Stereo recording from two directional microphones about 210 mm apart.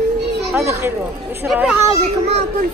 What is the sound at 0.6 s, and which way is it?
Speech, 15° right (ahead or behind).